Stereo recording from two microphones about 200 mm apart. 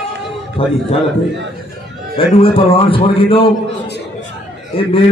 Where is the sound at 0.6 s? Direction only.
25° left (ahead or behind).